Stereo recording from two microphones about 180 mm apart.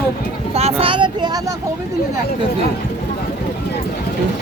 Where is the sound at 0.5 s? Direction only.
35° right (ahead or behind).